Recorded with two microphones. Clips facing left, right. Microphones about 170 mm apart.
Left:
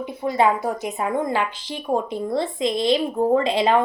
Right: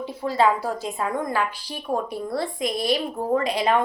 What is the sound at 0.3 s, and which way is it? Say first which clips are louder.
A woman's voice: left 1 dB; 20° left (ahead or behind).